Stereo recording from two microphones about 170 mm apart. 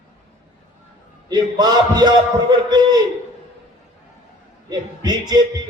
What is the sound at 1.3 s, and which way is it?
A man's voice, 25° right (ahead or behind).